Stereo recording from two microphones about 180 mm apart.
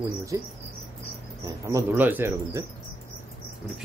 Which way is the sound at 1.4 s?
15° right (ahead or behind).